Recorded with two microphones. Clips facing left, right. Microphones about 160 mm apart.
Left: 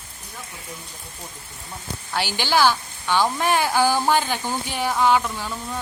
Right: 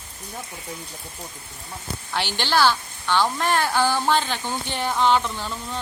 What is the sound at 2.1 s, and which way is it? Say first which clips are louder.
A woman's voice: left 1 dB; 10° left (ahead or behind).